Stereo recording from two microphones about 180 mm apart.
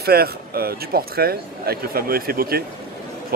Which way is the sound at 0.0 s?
60° right (ahead or behind).